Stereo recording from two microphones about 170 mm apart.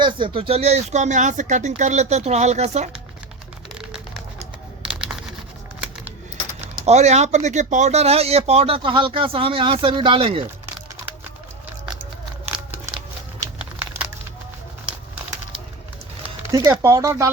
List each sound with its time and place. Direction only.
0.0 s speech: 30° right (ahead or behind)
6.6 s speech: 40° right (ahead or behind)
12.5 s crumpling: 10° right (ahead or behind)
16.5 s speech: 20° right (ahead or behind)